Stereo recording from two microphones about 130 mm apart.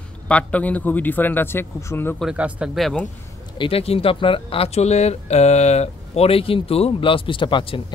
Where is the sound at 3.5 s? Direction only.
45° left (ahead or behind).